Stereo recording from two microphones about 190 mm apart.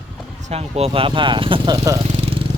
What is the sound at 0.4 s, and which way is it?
Speech, 35° right (ahead or behind).